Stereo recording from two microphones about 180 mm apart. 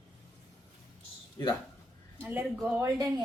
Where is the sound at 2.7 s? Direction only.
20° right (ahead or behind).